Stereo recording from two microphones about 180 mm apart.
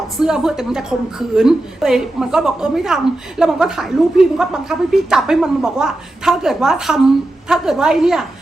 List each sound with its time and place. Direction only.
0.2 s a woman's voice: 5° right (ahead or behind)